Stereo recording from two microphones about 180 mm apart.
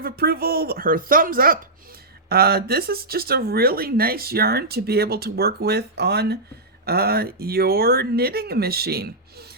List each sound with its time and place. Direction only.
0.0 s speech: 60° right (ahead or behind)